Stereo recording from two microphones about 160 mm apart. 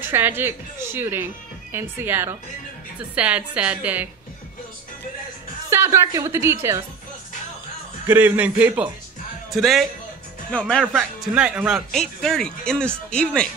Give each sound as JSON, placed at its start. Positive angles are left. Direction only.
{"t": 0.0, "sound": "a woman's voice", "side_deg": -15}
{"t": 5.7, "sound": "a woman's voice", "side_deg": -20}
{"t": 8.1, "sound": "a woman's voice", "side_deg": -10}
{"t": 11.0, "sound": "speech", "side_deg": -5}